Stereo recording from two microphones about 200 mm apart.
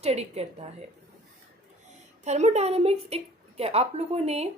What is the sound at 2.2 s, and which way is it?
A woman's voice, 35° right (ahead or behind).